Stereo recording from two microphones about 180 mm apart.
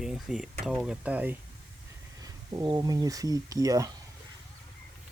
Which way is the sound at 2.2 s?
20° right (ahead or behind).